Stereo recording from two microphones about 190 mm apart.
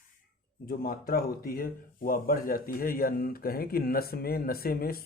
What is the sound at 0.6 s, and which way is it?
A man's voice, 50° left (ahead or behind).